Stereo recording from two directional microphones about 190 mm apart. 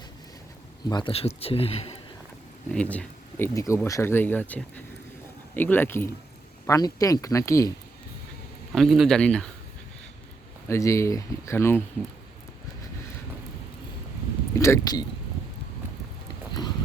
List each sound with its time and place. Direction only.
0.9 s speech: 25° left (ahead or behind)
2.6 s speech: 5° left (ahead or behind)
8.7 s speech: centre (ahead or behind)
10.7 s speech: 15° left (ahead or behind)
14.5 s speech: 15° left (ahead or behind)